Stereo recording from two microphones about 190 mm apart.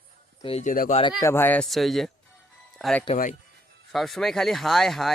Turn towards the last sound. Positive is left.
turn(degrees=0)  # may be behind; listen again after turning